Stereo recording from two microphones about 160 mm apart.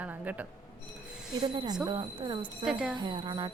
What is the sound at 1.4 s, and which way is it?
Speech, 25° right (ahead or behind).